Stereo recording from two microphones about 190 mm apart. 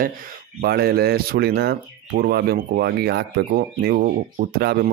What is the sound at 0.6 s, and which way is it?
Speech, 55° right (ahead or behind).